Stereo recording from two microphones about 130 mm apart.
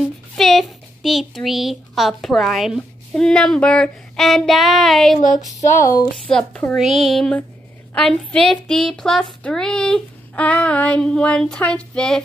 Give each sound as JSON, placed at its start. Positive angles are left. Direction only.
{"t": 0.4, "sound": "a child's voice", "side_deg": 0}
{"t": 5.8, "sound": "speech", "side_deg": 25}
{"t": 6.1, "sound": "child singing", "side_deg": 5}
{"t": 6.8, "sound": "a sound", "side_deg": 0}
{"t": 7.9, "sound": "child singing", "side_deg": 5}